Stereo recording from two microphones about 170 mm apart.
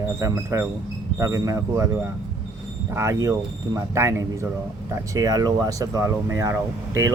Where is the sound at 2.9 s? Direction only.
15° right (ahead or behind).